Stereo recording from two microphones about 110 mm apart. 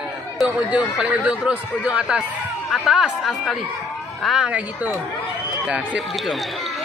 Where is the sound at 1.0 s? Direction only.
10° right (ahead or behind).